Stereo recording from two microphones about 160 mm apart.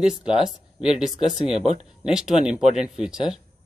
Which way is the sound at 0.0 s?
5° right (ahead or behind).